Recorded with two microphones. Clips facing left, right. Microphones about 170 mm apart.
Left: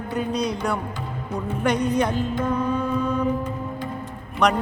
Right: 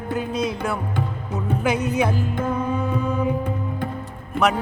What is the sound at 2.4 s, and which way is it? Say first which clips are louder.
Mantra: even; 5° right (ahead or behind).